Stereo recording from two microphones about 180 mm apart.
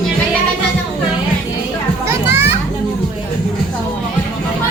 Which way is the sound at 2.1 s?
15° right (ahead or behind).